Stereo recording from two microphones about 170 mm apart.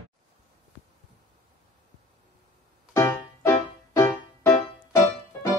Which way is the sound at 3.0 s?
15° left (ahead or behind).